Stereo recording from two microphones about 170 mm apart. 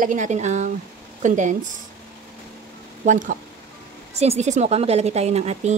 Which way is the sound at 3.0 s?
50° right (ahead or behind).